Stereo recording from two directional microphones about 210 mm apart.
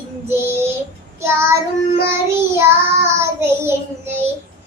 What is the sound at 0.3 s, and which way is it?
Child singing, 10° right (ahead or behind).